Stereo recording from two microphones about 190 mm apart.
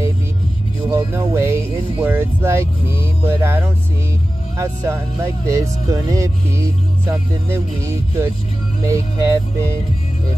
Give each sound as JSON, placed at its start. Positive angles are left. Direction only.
{"t": 0.8, "sound": "speech", "side_deg": -10}